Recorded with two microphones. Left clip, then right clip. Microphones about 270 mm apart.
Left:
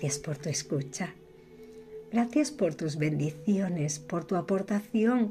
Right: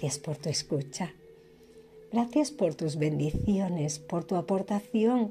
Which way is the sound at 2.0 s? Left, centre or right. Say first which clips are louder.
Even; centre.